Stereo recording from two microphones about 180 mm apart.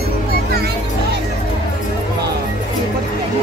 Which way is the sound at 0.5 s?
65° right (ahead or behind).